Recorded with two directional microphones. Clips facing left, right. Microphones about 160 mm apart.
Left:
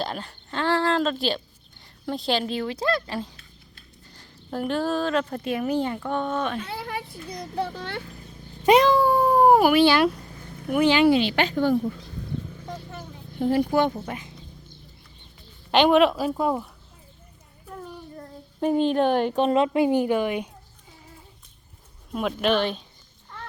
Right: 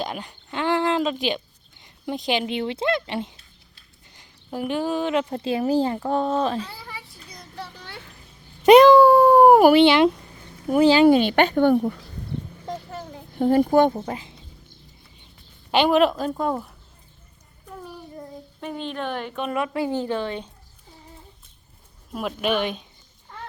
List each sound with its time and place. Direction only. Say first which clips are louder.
0.0 s a sound: even; 15° right (ahead or behind)
1.8 s speech: right 1 dB; 15° right (ahead or behind); by 6.7 s 30° right (ahead or behind)
6.7 s a child's voice: left 8 dB; 60° left (ahead or behind)
8.6 s speech: right 7 dB; 70° right (ahead or behind)
9.7 s speech: right 3 dB; 20° right (ahead or behind)
10.7 s speech: right 4 dB; 35° right (ahead or behind); by 11.9 s 65° right (ahead or behind)
13.0 s speech: right 3 dB; 45° right (ahead or behind)
13.9 s speech: right 3 dB; 30° right (ahead or behind)
15.7 s speech: left 1 dB; 5° right (ahead or behind)
18.6 s a woman's voice: left 10 dB; 40° left (ahead or behind); by 20.5 s 10° left (ahead or behind)
22.1 s speech: left 1 dB; centre (ahead or behind)